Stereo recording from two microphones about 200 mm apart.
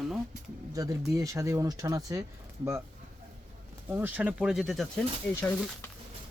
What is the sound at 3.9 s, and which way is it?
Speech, 10° right (ahead or behind).